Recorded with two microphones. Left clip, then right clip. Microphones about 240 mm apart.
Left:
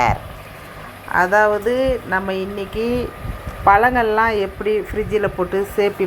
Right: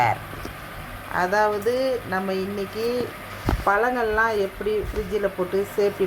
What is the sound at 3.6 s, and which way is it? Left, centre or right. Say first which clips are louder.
Speech: left 8 dB; centre.